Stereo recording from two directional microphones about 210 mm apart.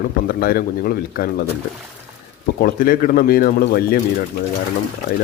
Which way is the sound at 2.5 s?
45° left (ahead or behind).